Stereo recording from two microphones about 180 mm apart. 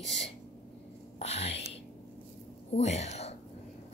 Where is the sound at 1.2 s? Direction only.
35° left (ahead or behind).